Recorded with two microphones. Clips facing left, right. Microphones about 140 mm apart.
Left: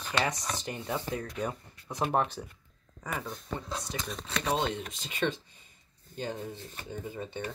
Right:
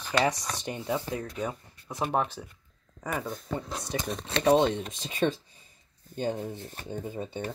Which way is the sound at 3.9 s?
30° right (ahead or behind).